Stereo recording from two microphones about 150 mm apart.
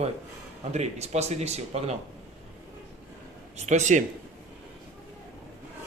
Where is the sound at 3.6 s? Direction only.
55° right (ahead or behind).